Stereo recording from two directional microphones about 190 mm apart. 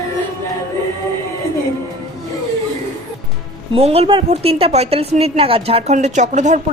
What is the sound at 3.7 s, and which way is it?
A woman's voice, 30° right (ahead or behind).